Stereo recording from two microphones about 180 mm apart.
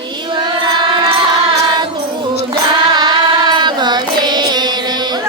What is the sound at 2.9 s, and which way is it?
Carnatic music, 25° right (ahead or behind).